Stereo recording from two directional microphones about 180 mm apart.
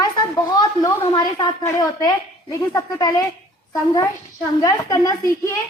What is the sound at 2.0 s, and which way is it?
A woman's voice, 20° left (ahead or behind).